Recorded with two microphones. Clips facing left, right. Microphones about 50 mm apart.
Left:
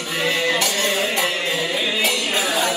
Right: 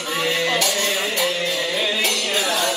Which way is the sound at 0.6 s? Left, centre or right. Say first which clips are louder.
Left 1 dB; left.